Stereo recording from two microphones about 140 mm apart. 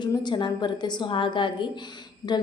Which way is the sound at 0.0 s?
30° left (ahead or behind).